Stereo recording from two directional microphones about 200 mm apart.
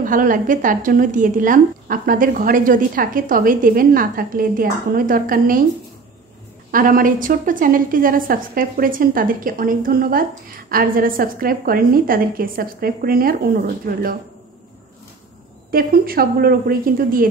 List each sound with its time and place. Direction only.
0.0 s a woman's voice: 40° right (ahead or behind)
6.7 s a woman's voice: 45° right (ahead or behind)
15.7 s a woman's voice: 50° right (ahead or behind)